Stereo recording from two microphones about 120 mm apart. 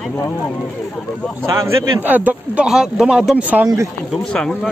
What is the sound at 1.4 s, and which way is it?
A man's voice, 25° right (ahead or behind).